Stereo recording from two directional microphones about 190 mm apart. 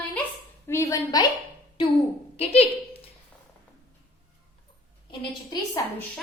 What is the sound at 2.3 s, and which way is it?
Speech, 30° left (ahead or behind).